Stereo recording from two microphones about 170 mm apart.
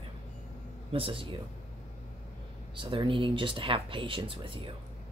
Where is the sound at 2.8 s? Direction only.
30° right (ahead or behind).